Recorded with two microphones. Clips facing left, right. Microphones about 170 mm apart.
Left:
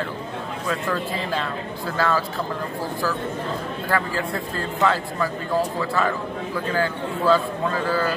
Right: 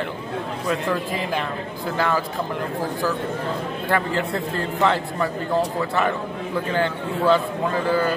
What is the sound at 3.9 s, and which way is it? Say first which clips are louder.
A man's voice: right 2 dB; 20° right (ahead or behind).